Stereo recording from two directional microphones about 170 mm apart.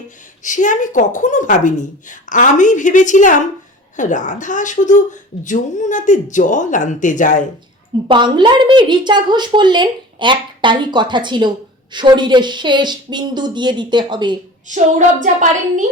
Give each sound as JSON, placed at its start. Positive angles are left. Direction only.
{"t": 0.4, "sound": "speech", "side_deg": 50}
{"t": 8.0, "sound": "a woman's voice", "side_deg": -25}
{"t": 14.7, "sound": "a woman's voice", "side_deg": -45}